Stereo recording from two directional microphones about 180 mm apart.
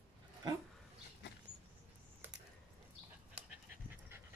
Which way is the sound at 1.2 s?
70° left (ahead or behind).